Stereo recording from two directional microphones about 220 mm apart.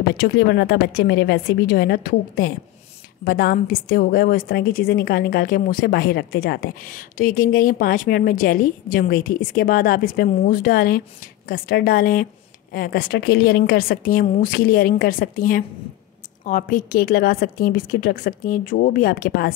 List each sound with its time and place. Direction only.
0.2 s a woman's voice: 50° left (ahead or behind)